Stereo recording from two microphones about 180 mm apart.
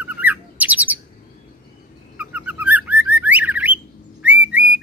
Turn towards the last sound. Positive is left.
turn(degrees=-10)  # may be behind; listen again after turning